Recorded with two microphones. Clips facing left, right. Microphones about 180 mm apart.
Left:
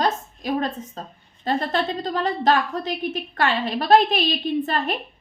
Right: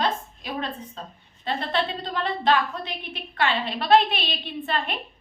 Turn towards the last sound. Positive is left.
turn(degrees=45)  # may be behind; listen again after turning